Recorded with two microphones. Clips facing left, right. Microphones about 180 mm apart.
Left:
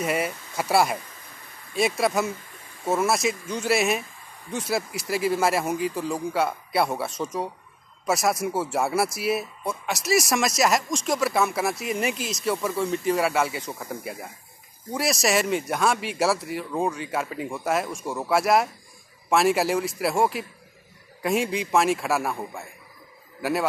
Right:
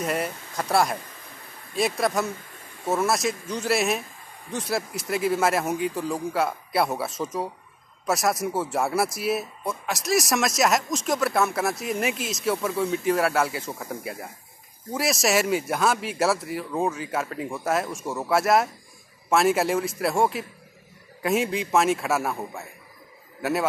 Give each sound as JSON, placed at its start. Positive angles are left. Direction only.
{"t": 0.0, "sound": "speech", "side_deg": 0}